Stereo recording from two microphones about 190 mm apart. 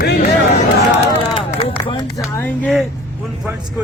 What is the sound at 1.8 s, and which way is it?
Speech, 20° left (ahead or behind).